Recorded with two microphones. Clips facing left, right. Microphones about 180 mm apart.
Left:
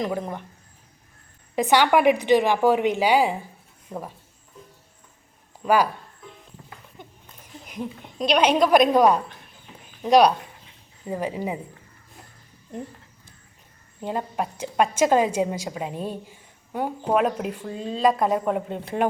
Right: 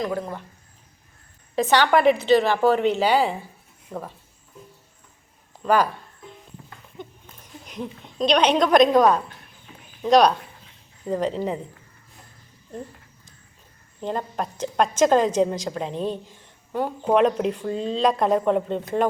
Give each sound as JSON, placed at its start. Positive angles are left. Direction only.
{"t": 0.0, "sound": "speech", "side_deg": 20}
{"t": 1.5, "sound": "a woman's voice", "side_deg": 15}
{"t": 5.6, "sound": "a woman's voice", "side_deg": 10}
{"t": 7.7, "sound": "a woman's voice", "side_deg": 10}
{"t": 14.0, "sound": "a woman's voice", "side_deg": 10}